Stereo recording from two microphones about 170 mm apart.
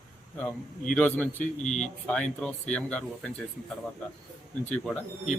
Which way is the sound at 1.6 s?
45° left (ahead or behind).